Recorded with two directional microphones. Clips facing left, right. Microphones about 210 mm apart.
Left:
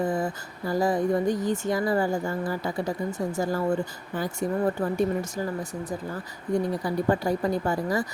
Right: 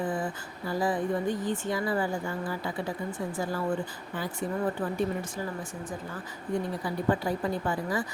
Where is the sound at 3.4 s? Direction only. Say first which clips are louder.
Left 5 dB; 45° left (ahead or behind).